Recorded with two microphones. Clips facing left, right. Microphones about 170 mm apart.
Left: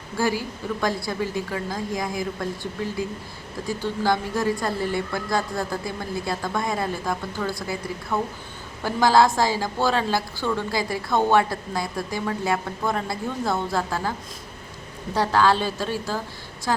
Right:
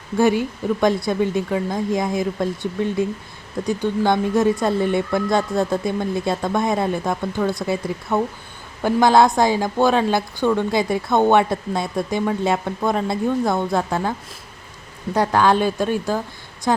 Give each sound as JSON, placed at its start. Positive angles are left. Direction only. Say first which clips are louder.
{"t": 0.2, "sound": "a woman's voice", "louder": "right 7 dB", "side_deg": -20}
{"t": 15.1, "sound": "a woman's voice", "louder": "right 3 dB", "side_deg": -15}